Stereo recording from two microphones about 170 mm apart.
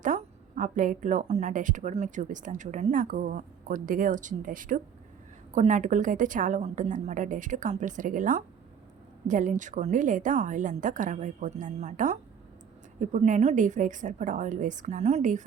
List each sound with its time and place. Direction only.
0.0 s speech: 45° right (ahead or behind)